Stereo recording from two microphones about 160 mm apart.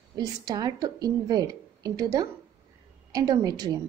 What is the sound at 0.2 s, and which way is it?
A woman's voice, 25° right (ahead or behind).